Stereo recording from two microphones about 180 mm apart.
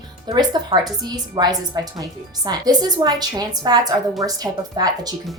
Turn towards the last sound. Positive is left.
turn(degrees=-20)  # may be behind; listen again after turning